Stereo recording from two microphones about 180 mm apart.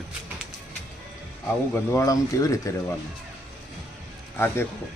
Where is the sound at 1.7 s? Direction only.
15° left (ahead or behind).